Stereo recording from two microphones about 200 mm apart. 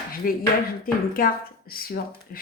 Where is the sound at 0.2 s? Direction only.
45° left (ahead or behind).